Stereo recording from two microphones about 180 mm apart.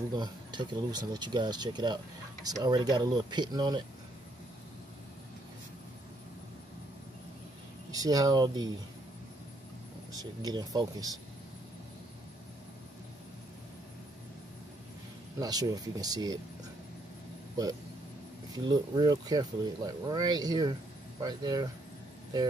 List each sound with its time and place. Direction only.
0.1 s speech: 25° right (ahead or behind)
7.9 s speech: 20° right (ahead or behind)
10.1 s speech: 20° right (ahead or behind)
15.3 s speech: 20° right (ahead or behind)
18.7 s speech: 25° right (ahead or behind)